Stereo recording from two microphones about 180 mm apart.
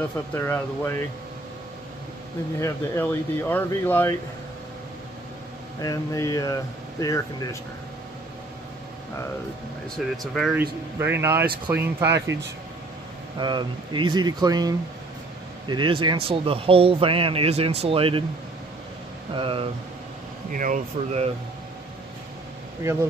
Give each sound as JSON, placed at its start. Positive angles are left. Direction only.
{"t": 0.3, "sound": "speech", "side_deg": 15}
{"t": 2.6, "sound": "speech", "side_deg": 10}
{"t": 5.8, "sound": "speech", "side_deg": 20}
{"t": 9.9, "sound": "speech", "side_deg": 0}
{"t": 11.0, "sound": "speech", "side_deg": -15}
{"t": 13.4, "sound": "speech", "side_deg": -25}
{"t": 19.3, "sound": "speech", "side_deg": -30}
{"t": 20.5, "sound": "speech", "side_deg": -45}
{"t": 22.8, "sound": "speech", "side_deg": -15}